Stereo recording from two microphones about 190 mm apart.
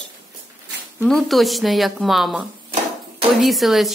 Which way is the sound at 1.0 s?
Centre (ahead or behind).